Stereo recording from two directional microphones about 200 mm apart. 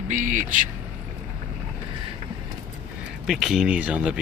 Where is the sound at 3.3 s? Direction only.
Centre (ahead or behind).